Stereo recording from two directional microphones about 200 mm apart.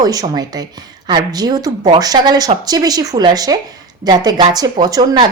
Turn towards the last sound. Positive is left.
turn(degrees=-20)  # may be behind; listen again after turning